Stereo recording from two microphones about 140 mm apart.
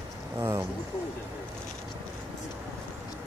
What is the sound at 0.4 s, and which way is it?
Speech, 15° right (ahead or behind).